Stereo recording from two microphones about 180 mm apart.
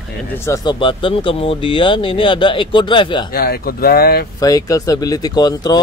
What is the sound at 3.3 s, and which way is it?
Speech, 60° left (ahead or behind).